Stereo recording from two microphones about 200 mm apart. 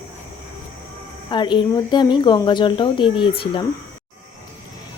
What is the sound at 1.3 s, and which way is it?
A woman's voice, 25° left (ahead or behind).